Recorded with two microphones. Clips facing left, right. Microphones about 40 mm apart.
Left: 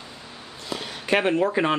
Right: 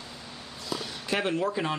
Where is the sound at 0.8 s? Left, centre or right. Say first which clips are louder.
Left 8 dB; left.